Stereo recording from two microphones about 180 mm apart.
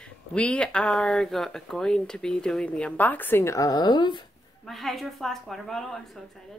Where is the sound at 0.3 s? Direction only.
5° left (ahead or behind); by 4.2 s 25° left (ahead or behind).